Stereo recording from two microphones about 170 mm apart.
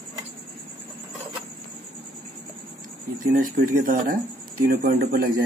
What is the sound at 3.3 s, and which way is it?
Speech, 55° right (ahead or behind).